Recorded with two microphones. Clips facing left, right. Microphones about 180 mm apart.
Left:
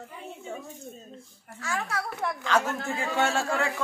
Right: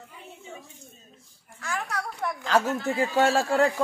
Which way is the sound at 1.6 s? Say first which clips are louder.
Even; centre (ahead or behind).